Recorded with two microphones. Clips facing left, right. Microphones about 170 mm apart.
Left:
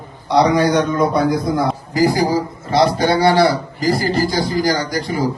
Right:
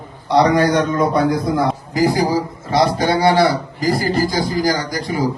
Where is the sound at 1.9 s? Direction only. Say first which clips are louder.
Left 2 dB; 20° right (ahead or behind).